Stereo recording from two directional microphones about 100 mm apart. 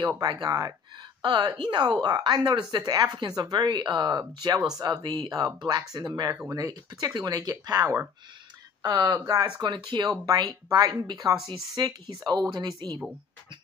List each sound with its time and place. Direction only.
0.2 s speech: 40° right (ahead or behind)
1.2 s speech: 45° right (ahead or behind)
4.4 s speech: 35° right (ahead or behind)